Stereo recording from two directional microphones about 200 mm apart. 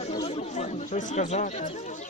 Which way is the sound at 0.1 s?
25° left (ahead or behind).